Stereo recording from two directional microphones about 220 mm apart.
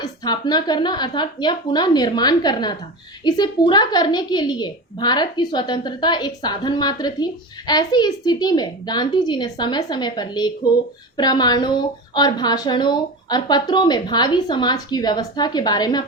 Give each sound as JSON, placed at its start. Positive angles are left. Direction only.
{"t": 0.0, "sound": "a woman's voice", "side_deg": 20}